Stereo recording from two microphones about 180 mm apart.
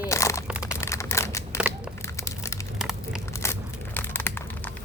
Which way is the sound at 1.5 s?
5° right (ahead or behind).